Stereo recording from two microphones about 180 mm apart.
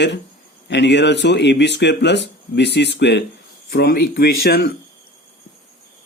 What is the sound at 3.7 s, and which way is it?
Speech, 60° left (ahead or behind).